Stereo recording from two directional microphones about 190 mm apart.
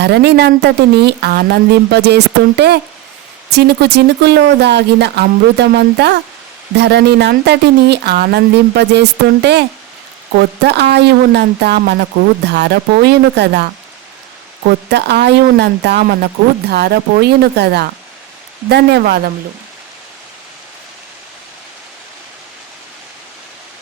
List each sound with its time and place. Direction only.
0.0 s speech: 60° right (ahead or behind)
14.8 s speech: 60° right (ahead or behind)